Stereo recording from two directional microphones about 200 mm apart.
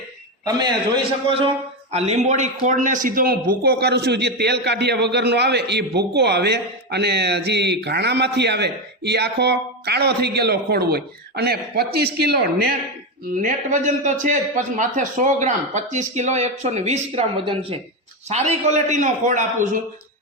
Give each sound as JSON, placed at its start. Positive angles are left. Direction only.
{"t": 1.9, "sound": "a man's voice", "side_deg": -30}
{"t": 13.4, "sound": "a man's voice", "side_deg": -40}